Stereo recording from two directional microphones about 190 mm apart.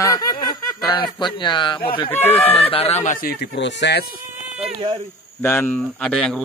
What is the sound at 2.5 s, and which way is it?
Speech, 30° left (ahead or behind).